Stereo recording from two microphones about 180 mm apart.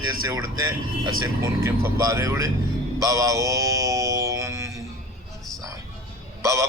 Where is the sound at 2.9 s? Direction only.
20° right (ahead or behind).